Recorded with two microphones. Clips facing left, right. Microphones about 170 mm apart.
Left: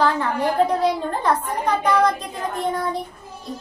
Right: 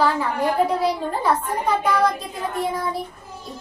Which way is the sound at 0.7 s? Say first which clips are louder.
Left 1 dB; 10° right (ahead or behind).